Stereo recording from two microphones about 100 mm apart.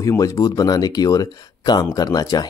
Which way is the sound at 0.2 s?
35° left (ahead or behind).